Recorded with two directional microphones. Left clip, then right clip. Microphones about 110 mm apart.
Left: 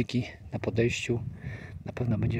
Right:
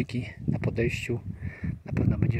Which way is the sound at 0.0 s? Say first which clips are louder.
Left 1 dB; 25° left (ahead or behind).